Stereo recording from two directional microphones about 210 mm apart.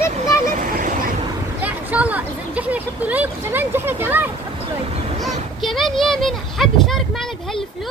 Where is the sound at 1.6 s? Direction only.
5° right (ahead or behind).